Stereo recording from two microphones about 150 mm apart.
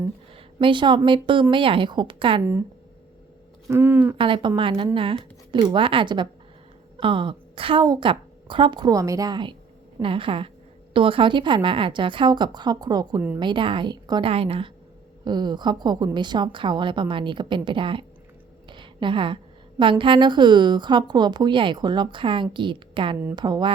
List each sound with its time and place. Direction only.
0.3 s speech: 35° right (ahead or behind)
2.4 s speech: 15° right (ahead or behind)
3.7 s speech: 15° right (ahead or behind)
4.2 s speech: 35° right (ahead or behind)
18.7 s a sound: 30° right (ahead or behind)
19.8 s speech: 35° right (ahead or behind)